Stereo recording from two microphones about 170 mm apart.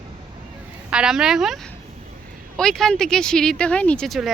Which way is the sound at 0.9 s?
5° right (ahead or behind).